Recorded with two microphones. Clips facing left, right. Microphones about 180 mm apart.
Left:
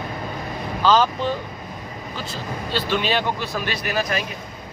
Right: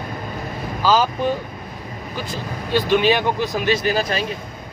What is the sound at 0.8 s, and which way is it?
Speech, 5° right (ahead or behind).